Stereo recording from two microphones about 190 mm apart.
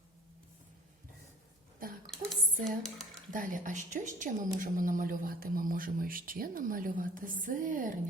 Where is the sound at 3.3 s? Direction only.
45° right (ahead or behind).